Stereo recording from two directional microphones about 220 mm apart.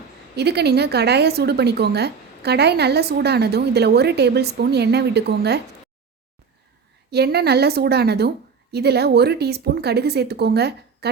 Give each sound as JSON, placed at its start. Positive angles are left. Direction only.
{"t": 0.3, "sound": "speech", "side_deg": -50}
{"t": 7.1, "sound": "speech", "side_deg": -45}